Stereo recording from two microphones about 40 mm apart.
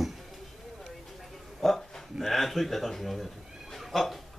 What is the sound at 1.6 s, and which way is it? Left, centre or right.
Speech, centre.